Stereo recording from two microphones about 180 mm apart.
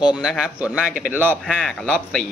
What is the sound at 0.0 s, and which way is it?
A man's voice, 5° right (ahead or behind).